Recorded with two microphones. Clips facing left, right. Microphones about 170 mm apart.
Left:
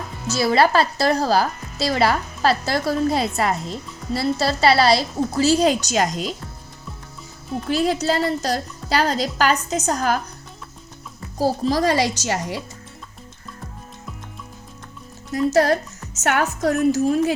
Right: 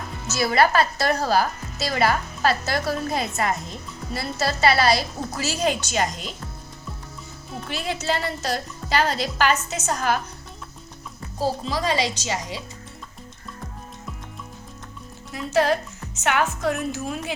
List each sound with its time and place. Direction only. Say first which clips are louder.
0.3 s a woman's voice: left 3 dB; 30° left (ahead or behind)
7.7 s a woman's voice: left 7 dB; 35° left (ahead or behind)
11.3 s a woman's voice: left 6 dB; 40° left (ahead or behind)
15.3 s a woman's voice: left 4 dB; 40° left (ahead or behind)